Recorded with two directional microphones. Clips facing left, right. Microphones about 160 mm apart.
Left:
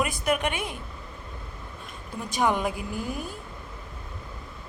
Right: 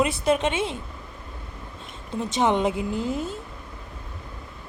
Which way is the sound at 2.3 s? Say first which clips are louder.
Right 3 dB; 25° right (ahead or behind).